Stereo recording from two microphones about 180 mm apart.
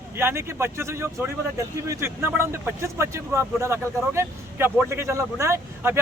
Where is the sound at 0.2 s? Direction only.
15° right (ahead or behind).